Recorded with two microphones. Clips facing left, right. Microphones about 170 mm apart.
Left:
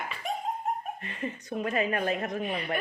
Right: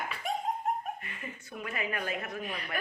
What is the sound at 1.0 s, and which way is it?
A woman's voice, 30° left (ahead or behind).